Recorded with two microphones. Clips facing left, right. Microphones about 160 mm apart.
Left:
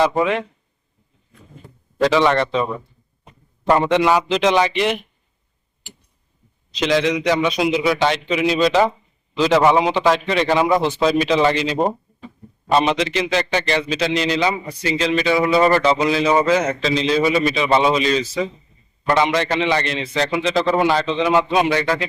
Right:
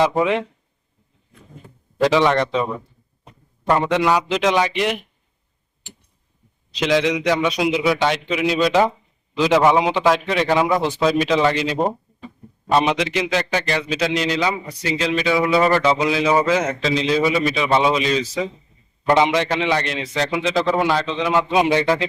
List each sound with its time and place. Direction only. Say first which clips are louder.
0.0 s a man's voice: even; 10° right (ahead or behind)
2.0 s a man's voice: even; 10° right (ahead or behind)
3.7 s a man's voice: left 2 dB; centre (ahead or behind)
6.7 s a man's voice: even; 10° right (ahead or behind)
19.0 s a man's voice: right 1 dB; 20° right (ahead or behind); by 21.4 s centre (ahead or behind)
21.7 s speech: right 2 dB; 25° right (ahead or behind)